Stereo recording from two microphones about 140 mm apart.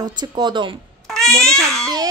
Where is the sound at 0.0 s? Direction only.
30° right (ahead or behind).